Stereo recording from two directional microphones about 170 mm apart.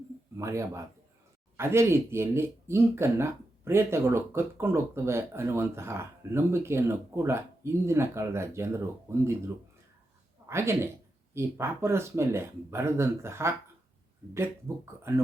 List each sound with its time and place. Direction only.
0.3 s speech: 15° right (ahead or behind)
10.4 s speech: 15° right (ahead or behind)
15.1 s speech: 15° right (ahead or behind)